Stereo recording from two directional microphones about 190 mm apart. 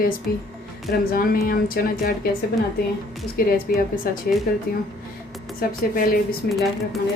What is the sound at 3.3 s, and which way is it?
Speech, 50° left (ahead or behind).